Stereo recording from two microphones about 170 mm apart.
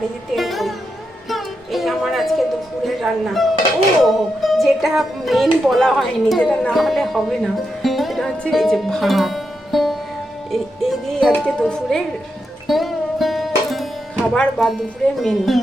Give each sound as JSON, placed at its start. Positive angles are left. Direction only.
{"t": 0.3, "sound": "music", "side_deg": 0}
{"t": 2.8, "sound": "speech", "side_deg": 0}
{"t": 12.6, "sound": "music", "side_deg": 0}